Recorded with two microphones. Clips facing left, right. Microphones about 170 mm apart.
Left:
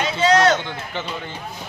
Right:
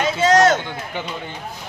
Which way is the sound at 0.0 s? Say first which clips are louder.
Right 2 dB; 45° right (ahead or behind).